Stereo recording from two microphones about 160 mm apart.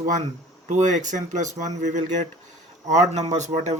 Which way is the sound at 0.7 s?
50° right (ahead or behind).